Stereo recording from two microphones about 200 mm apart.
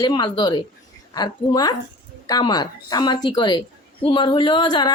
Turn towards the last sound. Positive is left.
turn(degrees=20)  # may be behind; listen again after turning